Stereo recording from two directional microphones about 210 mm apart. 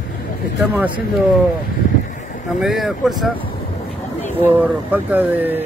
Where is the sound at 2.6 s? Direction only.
Centre (ahead or behind).